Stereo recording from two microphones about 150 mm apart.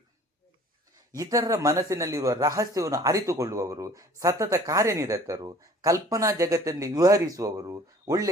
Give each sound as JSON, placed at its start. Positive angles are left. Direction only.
{"t": 1.1, "sound": "a man's voice", "side_deg": -25}